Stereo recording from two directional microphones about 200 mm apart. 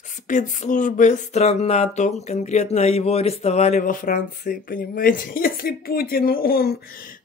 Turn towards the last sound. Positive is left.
turn(degrees=50)  # may be behind; listen again after turning